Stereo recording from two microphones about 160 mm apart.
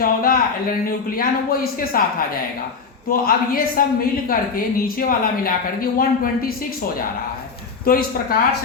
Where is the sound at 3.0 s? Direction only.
65° left (ahead or behind).